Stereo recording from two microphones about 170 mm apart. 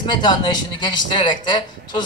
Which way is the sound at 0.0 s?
25° left (ahead or behind).